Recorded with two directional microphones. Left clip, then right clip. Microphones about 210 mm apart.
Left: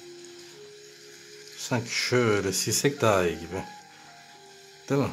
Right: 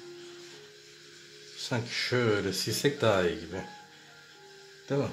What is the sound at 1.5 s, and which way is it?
Speech, 15° left (ahead or behind).